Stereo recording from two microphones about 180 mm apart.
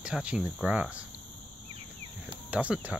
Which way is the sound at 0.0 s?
5° right (ahead or behind).